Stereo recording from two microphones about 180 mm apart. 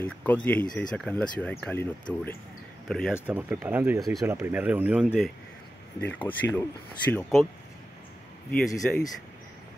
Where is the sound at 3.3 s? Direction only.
10° right (ahead or behind).